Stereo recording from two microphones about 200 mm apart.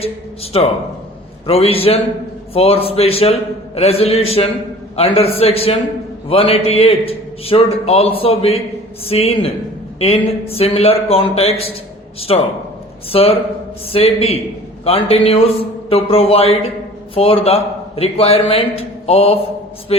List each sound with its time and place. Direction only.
0.5 s a man's voice: 30° left (ahead or behind)